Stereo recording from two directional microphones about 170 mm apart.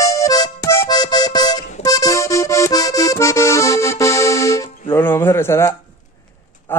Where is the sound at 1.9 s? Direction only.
20° left (ahead or behind).